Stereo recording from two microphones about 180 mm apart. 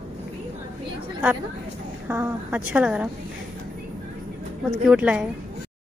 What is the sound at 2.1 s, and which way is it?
Speech, 10° right (ahead or behind).